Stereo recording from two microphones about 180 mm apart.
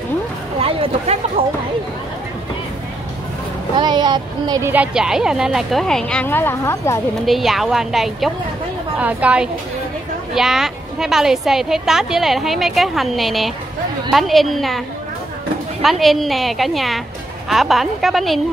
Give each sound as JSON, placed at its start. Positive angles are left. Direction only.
{"t": 0.6, "sound": "speech", "side_deg": -30}
{"t": 3.7, "sound": "a woman's voice", "side_deg": -25}
{"t": 7.2, "sound": "a woman's voice", "side_deg": 0}
{"t": 15.8, "sound": "a woman's voice", "side_deg": 0}